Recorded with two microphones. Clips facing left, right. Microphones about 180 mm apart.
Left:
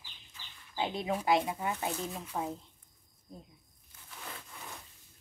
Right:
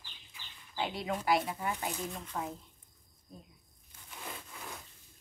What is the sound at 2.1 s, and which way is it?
Speech, 10° left (ahead or behind).